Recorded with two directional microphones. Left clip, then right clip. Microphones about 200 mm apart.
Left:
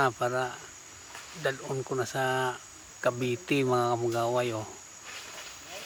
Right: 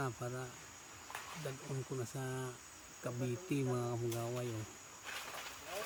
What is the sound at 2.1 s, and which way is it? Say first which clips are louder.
Speech: left 16 dB; 35° left (ahead or behind).